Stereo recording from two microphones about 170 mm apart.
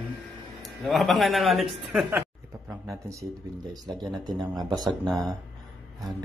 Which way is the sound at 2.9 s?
20° right (ahead or behind).